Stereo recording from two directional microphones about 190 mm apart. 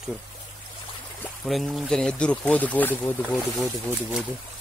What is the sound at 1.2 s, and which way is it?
Speech, centre (ahead or behind).